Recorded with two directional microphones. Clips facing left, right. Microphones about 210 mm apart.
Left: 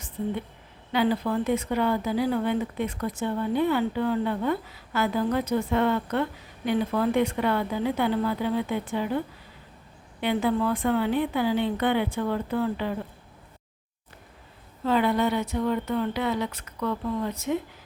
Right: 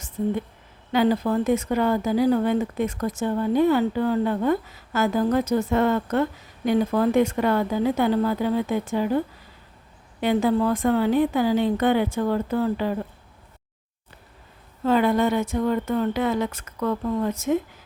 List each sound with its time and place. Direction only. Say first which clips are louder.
0.9 s speech: right 4 dB; 45° right (ahead or behind)
14.8 s speech: right 3 dB; 45° right (ahead or behind)